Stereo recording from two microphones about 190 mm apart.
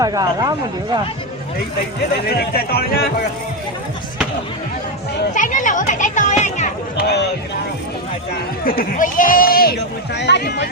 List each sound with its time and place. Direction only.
0.0 s speech: 20° right (ahead or behind)
2.2 s speech: 55° left (ahead or behind)
5.3 s music: 45° left (ahead or behind)
6.9 s a sound: 60° left (ahead or behind)
8.6 s speech: 50° left (ahead or behind)